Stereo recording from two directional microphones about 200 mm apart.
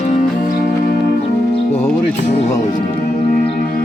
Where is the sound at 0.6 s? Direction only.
50° left (ahead or behind).